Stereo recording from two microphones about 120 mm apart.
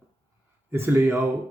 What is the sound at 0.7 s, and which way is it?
Speech, 20° right (ahead or behind).